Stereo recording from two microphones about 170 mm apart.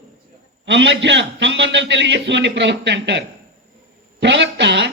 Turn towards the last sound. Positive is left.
turn(degrees=-90)